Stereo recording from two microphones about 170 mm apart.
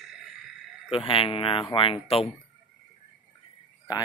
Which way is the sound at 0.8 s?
30° left (ahead or behind).